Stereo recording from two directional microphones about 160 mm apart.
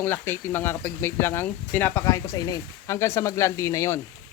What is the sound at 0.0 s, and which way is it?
Speech, 15° left (ahead or behind).